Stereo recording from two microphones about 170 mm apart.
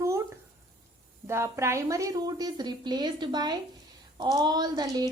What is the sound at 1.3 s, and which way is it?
A woman's voice, 15° right (ahead or behind).